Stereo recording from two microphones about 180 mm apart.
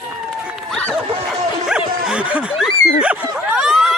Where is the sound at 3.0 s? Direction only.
5° right (ahead or behind).